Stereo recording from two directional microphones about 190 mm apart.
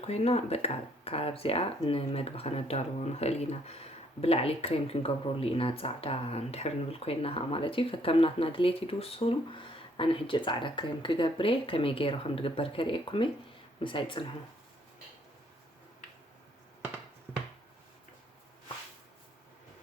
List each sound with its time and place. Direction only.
0.0 s speech: 35° left (ahead or behind)